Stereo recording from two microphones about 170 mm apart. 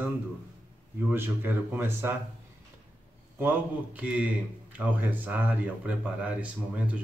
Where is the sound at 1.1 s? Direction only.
15° right (ahead or behind).